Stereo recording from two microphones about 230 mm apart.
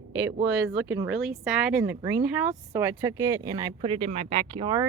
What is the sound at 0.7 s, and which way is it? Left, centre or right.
Speech, centre.